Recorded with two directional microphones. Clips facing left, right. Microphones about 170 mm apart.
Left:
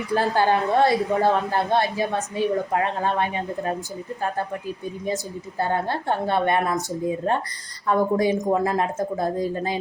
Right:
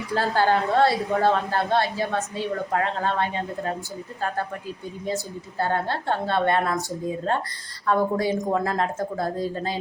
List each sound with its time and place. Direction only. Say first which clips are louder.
0.1 s a woman's voice: left 1 dB; 15° left (ahead or behind)
5.0 s a woman's voice: even; 20° left (ahead or behind)
7.9 s a woman's voice: left 2 dB; 15° left (ahead or behind)